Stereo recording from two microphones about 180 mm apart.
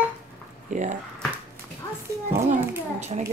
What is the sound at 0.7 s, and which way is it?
Speech, 45° right (ahead or behind).